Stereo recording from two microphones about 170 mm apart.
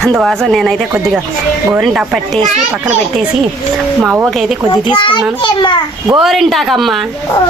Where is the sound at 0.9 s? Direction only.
10° right (ahead or behind).